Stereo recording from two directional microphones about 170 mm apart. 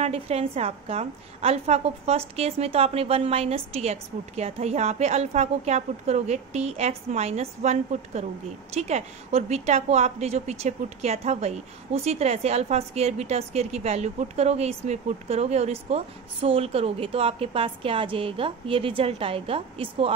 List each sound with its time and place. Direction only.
0.0 s a woman's voice: 35° right (ahead or behind)